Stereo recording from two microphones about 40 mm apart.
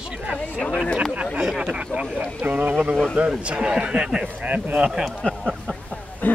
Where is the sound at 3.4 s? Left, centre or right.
Right.